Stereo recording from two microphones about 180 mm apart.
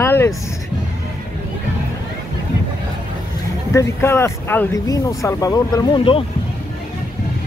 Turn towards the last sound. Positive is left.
turn(degrees=25)  # may be behind; listen again after turning